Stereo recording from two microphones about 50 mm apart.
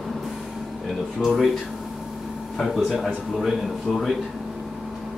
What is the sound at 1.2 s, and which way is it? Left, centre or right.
Speech, centre.